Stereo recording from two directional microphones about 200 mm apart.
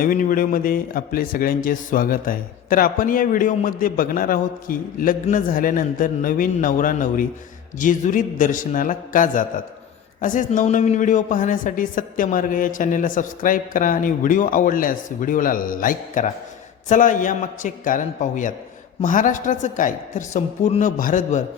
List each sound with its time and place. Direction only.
0.0 s a woman's voice: 45° left (ahead or behind)